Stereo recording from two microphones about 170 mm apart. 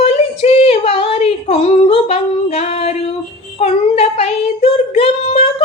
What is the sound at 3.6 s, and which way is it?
Child singing, 35° left (ahead or behind).